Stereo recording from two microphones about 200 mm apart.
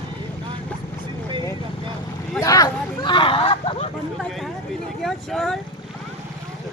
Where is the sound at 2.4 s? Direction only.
20° left (ahead or behind).